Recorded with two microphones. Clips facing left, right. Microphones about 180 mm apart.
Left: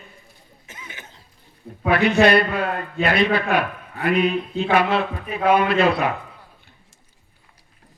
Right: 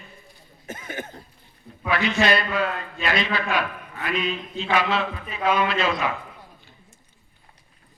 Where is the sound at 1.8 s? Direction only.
60° left (ahead or behind).